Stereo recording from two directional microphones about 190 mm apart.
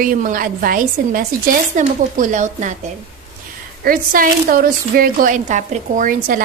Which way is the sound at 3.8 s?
50° right (ahead or behind).